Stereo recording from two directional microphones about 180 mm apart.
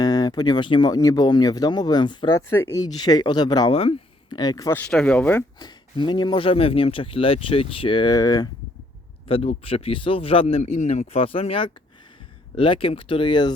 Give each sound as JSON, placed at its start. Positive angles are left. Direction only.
{"t": 0.0, "sound": "speech", "side_deg": 20}
{"t": 5.5, "sound": "speech", "side_deg": 25}
{"t": 9.2, "sound": "a man's voice", "side_deg": 35}